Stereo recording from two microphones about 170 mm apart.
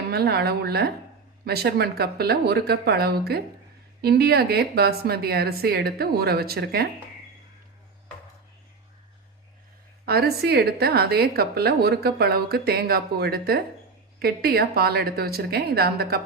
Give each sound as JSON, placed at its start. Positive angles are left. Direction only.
{"t": 0.1, "sound": "a woman's voice", "side_deg": -70}
{"t": 10.1, "sound": "a woman's voice", "side_deg": -65}